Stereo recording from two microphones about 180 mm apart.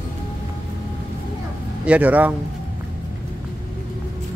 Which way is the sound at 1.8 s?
10° right (ahead or behind).